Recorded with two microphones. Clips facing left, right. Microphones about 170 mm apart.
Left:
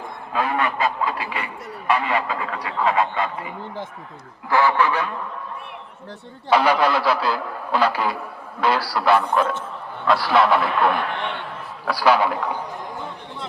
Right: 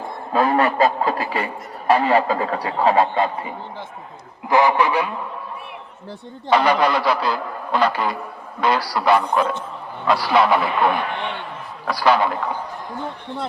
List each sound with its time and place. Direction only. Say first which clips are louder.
0.3 s speech: right 6 dB; 40° right (ahead or behind)
4.4 s speech: right 2 dB; 15° right (ahead or behind)
6.5 s a man's voice: right 1 dB; 5° left (ahead or behind)
11.9 s a man's voice: even; 5° left (ahead or behind)